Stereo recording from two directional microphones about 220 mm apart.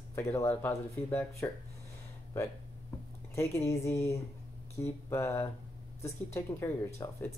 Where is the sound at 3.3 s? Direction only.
10° left (ahead or behind).